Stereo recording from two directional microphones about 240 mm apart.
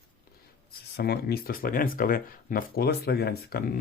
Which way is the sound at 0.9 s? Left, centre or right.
Left.